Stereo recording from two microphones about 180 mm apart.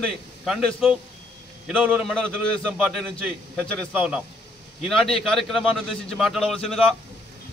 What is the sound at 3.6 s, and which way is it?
A man's voice, 5° right (ahead or behind).